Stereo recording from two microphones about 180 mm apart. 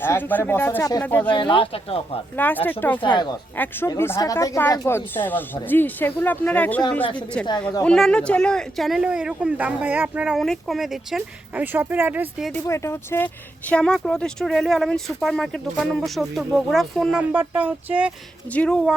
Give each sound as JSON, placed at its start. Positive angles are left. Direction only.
{"t": 0.0, "sound": "speech", "side_deg": 10}
{"t": 1.3, "sound": "speech", "side_deg": 25}
{"t": 2.3, "sound": "speech", "side_deg": 10}
{"t": 3.0, "sound": "speech", "side_deg": 25}
{"t": 3.6, "sound": "speech", "side_deg": 15}
{"t": 7.9, "sound": "speech", "side_deg": 5}
{"t": 12.5, "sound": "speech", "side_deg": 15}
{"t": 18.5, "sound": "speech", "side_deg": 5}